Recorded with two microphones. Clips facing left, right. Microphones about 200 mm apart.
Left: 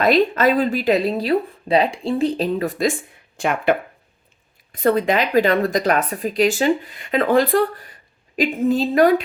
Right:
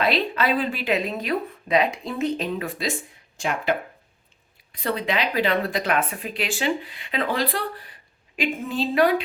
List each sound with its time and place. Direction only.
0.0 s speech: 45° left (ahead or behind)
3.3 s a woman's voice: 55° left (ahead or behind)